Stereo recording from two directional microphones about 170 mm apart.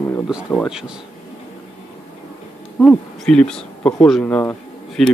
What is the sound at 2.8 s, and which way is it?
Speech, 5° left (ahead or behind).